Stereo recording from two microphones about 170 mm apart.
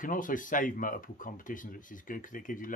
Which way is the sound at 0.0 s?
50° left (ahead or behind).